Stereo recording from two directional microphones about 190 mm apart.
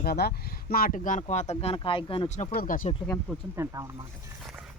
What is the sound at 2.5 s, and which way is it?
Speech, 45° left (ahead or behind).